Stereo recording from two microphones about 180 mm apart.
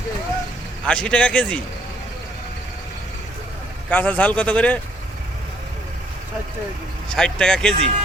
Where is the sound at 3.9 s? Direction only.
10° left (ahead or behind).